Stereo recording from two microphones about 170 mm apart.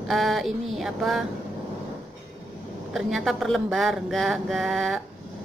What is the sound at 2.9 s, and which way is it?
A woman's voice, centre (ahead or behind).